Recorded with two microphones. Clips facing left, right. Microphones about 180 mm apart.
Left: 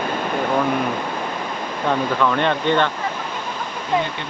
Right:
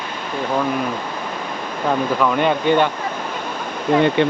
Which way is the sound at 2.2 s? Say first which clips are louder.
Right 2 dB; 10° right (ahead or behind).